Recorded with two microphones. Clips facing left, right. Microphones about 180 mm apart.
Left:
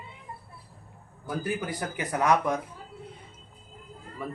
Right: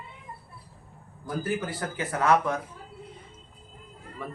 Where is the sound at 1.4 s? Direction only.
15° left (ahead or behind).